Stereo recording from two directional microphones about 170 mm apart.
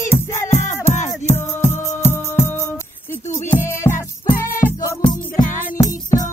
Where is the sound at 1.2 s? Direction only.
15° left (ahead or behind).